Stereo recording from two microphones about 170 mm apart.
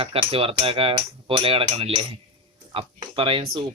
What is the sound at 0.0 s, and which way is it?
Speech, 35° right (ahead or behind).